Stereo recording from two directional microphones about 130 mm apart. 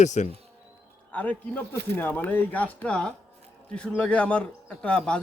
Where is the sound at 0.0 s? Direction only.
65° left (ahead or behind).